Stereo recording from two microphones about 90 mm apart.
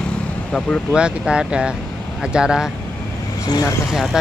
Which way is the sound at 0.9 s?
10° right (ahead or behind).